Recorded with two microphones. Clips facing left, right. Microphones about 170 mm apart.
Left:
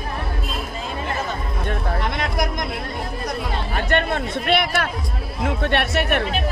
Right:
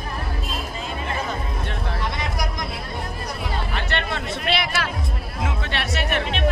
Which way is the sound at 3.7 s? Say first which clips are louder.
Left 9 dB; 50° left (ahead or behind).